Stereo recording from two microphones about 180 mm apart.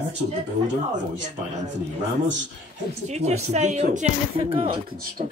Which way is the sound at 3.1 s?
40° right (ahead or behind).